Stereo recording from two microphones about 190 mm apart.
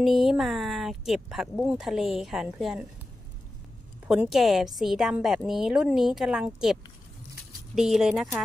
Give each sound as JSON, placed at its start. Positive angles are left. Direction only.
{"t": 0.0, "sound": "speech", "side_deg": 0}
{"t": 4.1, "sound": "speech", "side_deg": 0}